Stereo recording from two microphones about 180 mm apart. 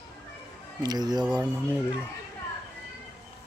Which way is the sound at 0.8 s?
20° right (ahead or behind).